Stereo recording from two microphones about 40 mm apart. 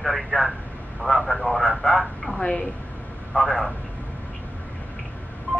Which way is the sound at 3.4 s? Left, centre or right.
Centre.